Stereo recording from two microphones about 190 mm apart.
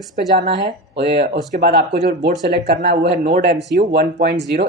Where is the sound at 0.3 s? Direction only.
55° right (ahead or behind).